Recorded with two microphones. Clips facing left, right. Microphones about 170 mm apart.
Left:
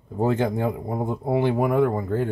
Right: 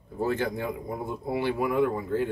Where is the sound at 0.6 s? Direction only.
40° left (ahead or behind).